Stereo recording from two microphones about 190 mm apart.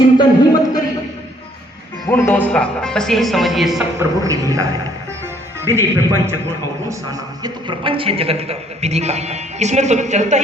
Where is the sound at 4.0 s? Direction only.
15° right (ahead or behind).